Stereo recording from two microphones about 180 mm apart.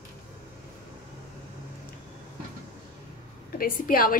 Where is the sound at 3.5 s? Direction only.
50° left (ahead or behind).